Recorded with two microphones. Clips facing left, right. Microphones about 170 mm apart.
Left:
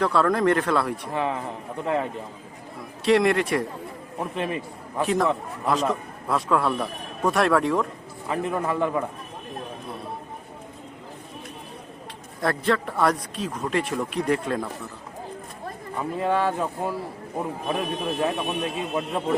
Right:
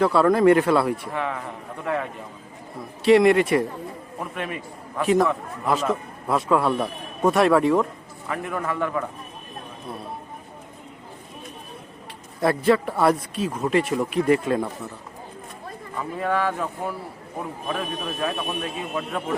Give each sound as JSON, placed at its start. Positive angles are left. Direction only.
{"t": 0.0, "sound": "speech", "side_deg": -5}
{"t": 1.1, "sound": "a man's voice", "side_deg": 25}
{"t": 3.0, "sound": "speech", "side_deg": 0}
{"t": 4.2, "sound": "a man's voice", "side_deg": 30}
{"t": 5.0, "sound": "speech", "side_deg": 0}
{"t": 8.3, "sound": "a man's voice", "side_deg": 25}
{"t": 12.4, "sound": "speech", "side_deg": -5}
{"t": 16.0, "sound": "a man's voice", "side_deg": 25}